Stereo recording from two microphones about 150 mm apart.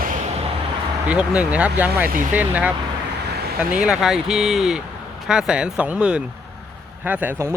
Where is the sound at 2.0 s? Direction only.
65° right (ahead or behind).